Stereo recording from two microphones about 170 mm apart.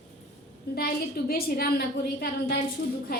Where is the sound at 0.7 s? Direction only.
65° left (ahead or behind).